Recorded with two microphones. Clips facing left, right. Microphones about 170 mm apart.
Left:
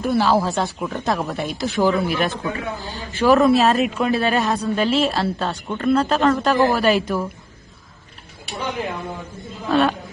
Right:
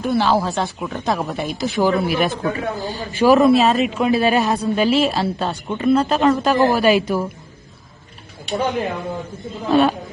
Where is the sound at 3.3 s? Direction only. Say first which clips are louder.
Right 2 dB; centre (ahead or behind).